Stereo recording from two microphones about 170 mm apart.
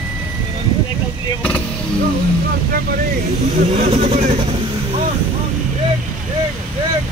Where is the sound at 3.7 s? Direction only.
35° right (ahead or behind).